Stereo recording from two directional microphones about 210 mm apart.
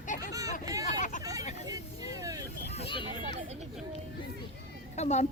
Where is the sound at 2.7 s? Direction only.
25° left (ahead or behind).